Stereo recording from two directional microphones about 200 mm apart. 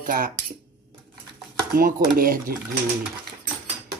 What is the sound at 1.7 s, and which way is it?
Speech, 45° right (ahead or behind).